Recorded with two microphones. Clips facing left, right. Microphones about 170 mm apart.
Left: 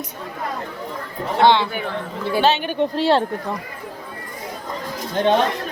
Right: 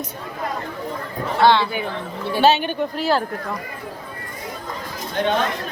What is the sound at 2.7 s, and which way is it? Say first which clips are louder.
Speech: left 3 dB; 30° left (ahead or behind).